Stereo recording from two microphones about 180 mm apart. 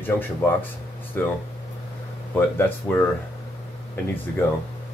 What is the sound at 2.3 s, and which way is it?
Speech, 10° left (ahead or behind).